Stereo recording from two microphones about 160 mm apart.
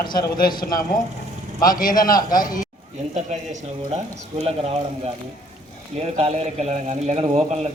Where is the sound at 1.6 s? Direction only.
60° left (ahead or behind).